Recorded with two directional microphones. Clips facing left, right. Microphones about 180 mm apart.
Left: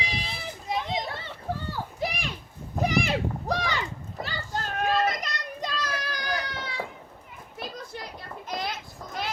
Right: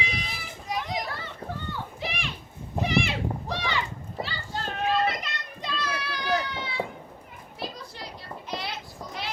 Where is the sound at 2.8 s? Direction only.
40° left (ahead or behind).